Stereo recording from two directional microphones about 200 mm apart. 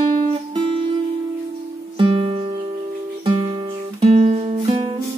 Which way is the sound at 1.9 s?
25° right (ahead or behind).